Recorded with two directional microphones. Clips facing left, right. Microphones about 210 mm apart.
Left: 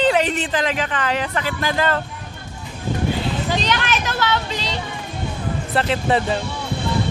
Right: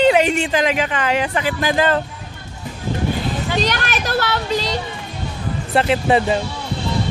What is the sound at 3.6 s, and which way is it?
Speech, 45° right (ahead or behind).